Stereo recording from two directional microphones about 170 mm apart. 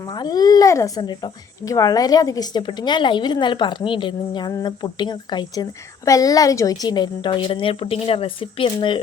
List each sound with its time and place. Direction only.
0.0 s speech: 25° left (ahead or behind)